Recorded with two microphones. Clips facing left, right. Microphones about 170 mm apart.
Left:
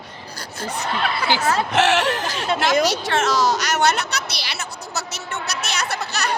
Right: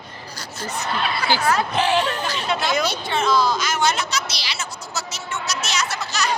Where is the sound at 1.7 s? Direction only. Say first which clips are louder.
Left 2 dB; 80° left.